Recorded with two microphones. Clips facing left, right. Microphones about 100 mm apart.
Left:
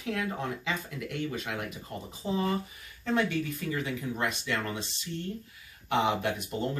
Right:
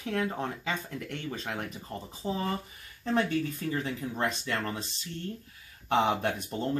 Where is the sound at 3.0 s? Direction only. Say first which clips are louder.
Right 1 dB; 35° right (ahead or behind).